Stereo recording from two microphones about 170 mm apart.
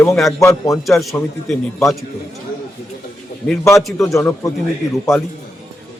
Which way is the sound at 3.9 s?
20° left (ahead or behind).